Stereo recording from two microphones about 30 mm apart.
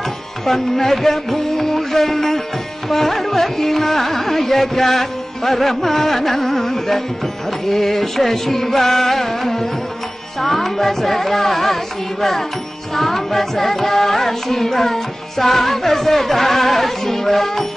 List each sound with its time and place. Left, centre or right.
0.5 s music: centre